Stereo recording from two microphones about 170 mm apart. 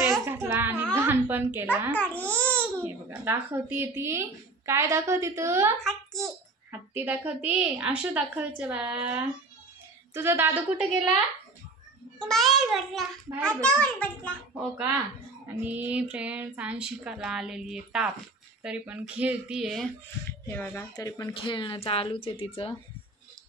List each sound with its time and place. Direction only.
0.2 s a sound: 15° right (ahead or behind)
1.3 s speech: 10° right (ahead or behind)
2.0 s a child's voice: 10° left (ahead or behind)
2.8 s speech: 15° right (ahead or behind)
5.9 s a child's voice: centre (ahead or behind)
6.9 s speech: 10° right (ahead or behind)
12.2 s a child's voice: centre (ahead or behind)
14.3 s speech: 10° right (ahead or behind)
20.2 s a child's voice: 15° left (ahead or behind)
21.0 s speech: 25° left (ahead or behind)